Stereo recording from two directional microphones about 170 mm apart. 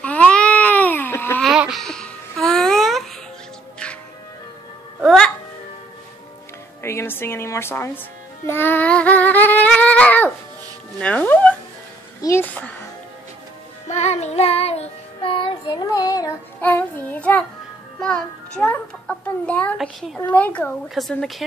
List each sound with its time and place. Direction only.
0.0 s baby cry: 10° left (ahead or behind)
1.4 s music: centre (ahead or behind)
5.0 s music: 5° left (ahead or behind)
6.8 s speech: 15° left (ahead or behind)
8.5 s child singing: 10° left (ahead or behind)
11.0 s music: 10° left (ahead or behind)
12.2 s a sound: 15° left (ahead or behind)
13.8 s child singing: 40° left (ahead or behind); by 16.3 s 20° left (ahead or behind)
16.6 s child singing: 10° left (ahead or behind)
18.0 s a child's voice: 5° left (ahead or behind)